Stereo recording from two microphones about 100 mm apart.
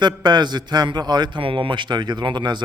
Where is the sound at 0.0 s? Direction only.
45° right (ahead or behind).